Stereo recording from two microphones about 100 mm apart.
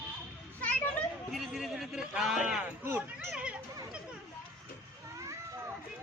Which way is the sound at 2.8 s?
20° right (ahead or behind).